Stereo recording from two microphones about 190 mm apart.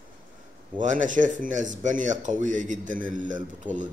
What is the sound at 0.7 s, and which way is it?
A man's voice, 40° right (ahead or behind).